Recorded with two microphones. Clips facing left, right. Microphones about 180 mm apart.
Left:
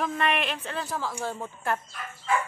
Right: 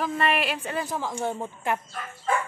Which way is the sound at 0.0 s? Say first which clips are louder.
Right 2 dB; centre (ahead or behind).